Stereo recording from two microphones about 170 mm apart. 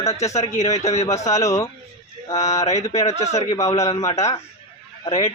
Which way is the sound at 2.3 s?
40° left (ahead or behind).